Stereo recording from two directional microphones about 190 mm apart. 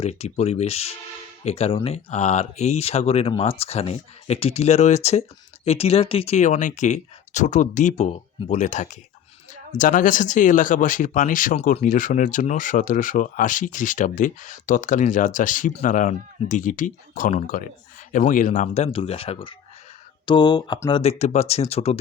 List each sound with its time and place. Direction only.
0.0 s speech: 35° left (ahead or behind); by 20.9 s 15° left (ahead or behind)
20.9 s speech: 35° left (ahead or behind)